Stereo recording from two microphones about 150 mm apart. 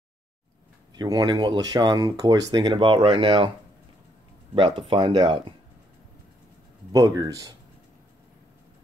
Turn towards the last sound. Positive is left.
turn(degrees=-25)  # may be behind; listen again after turning